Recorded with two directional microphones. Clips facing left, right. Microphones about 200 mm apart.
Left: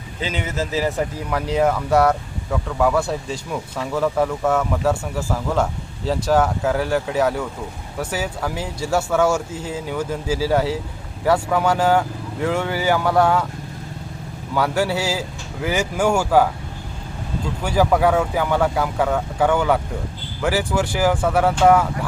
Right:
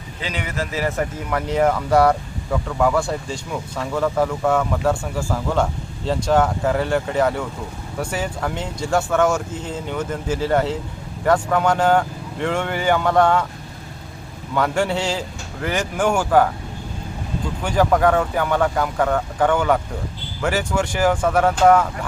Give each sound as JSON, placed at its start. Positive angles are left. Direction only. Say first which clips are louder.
{"t": 0.4, "sound": "speech", "louder": "left 1 dB", "side_deg": 20}
{"t": 14.5, "sound": "speech", "louder": "even", "side_deg": 5}
{"t": 17.6, "sound": "speech", "louder": "even", "side_deg": 5}